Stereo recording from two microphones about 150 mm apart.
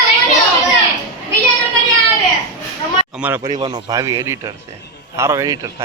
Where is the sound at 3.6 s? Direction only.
30° right (ahead or behind).